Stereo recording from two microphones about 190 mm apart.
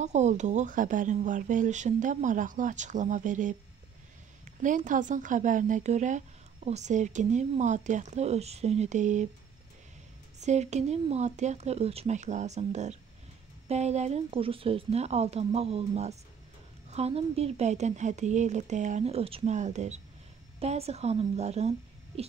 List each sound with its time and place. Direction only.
0.0 s a woman's voice: 35° right (ahead or behind)
4.6 s a woman's voice: 40° right (ahead or behind)
10.4 s a woman's voice: 35° right (ahead or behind)